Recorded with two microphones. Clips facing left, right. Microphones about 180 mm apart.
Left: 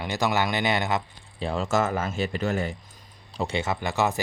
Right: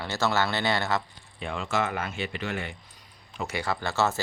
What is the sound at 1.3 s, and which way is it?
Speech, 35° left (ahead or behind).